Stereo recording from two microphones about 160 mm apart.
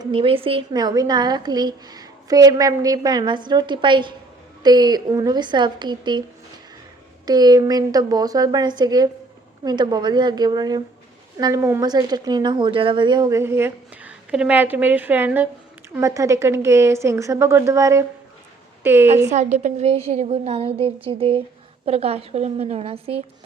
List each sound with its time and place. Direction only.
0.0 s a woman's voice: 35° right (ahead or behind)
7.3 s a woman's voice: 25° right (ahead or behind)
19.3 s a woman's voice: 45° right (ahead or behind)